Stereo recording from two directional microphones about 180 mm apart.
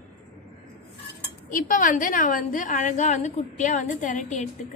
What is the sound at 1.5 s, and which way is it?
A woman's voice, 45° left (ahead or behind).